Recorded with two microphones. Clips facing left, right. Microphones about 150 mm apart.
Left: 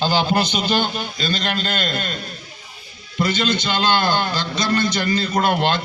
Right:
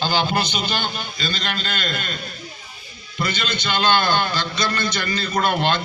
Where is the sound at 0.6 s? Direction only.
15° left (ahead or behind).